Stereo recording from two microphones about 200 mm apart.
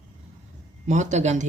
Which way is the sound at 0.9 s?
35° right (ahead or behind).